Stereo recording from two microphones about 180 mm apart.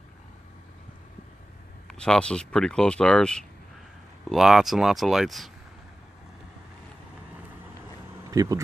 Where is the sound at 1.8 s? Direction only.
5° left (ahead or behind).